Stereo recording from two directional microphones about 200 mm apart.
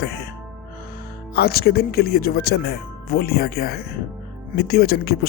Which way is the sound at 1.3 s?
50° left (ahead or behind).